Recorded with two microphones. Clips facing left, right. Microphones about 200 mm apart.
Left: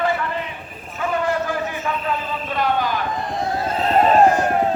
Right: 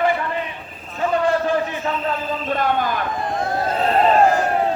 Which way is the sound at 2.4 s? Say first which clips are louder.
Even; 50° right (ahead or behind).